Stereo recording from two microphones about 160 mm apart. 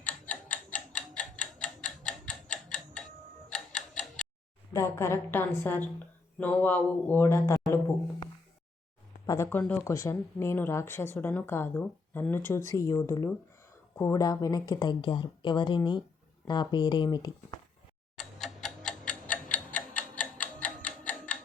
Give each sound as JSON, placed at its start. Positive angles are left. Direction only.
{"t": 0.0, "sound": "tick-tock", "side_deg": 10}
{"t": 4.7, "sound": "speech", "side_deg": 15}
{"t": 9.2, "sound": "speech", "side_deg": 20}
{"t": 18.2, "sound": "clock", "side_deg": 0}
{"t": 18.8, "sound": "tick-tock", "side_deg": 55}
{"t": 20.6, "sound": "tick-tock", "side_deg": 10}